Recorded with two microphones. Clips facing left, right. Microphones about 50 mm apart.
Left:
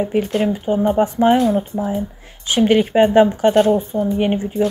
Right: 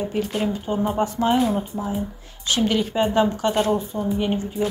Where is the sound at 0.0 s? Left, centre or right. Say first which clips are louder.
Left 6 dB; left.